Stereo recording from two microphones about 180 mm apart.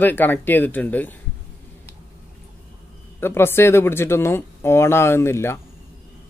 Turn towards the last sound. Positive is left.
turn(degrees=15)  # may be behind; listen again after turning